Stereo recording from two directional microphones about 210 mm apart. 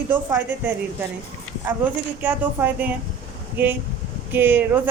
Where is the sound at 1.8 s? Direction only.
5° right (ahead or behind).